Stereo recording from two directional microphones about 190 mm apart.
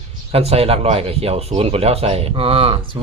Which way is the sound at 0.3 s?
30° right (ahead or behind).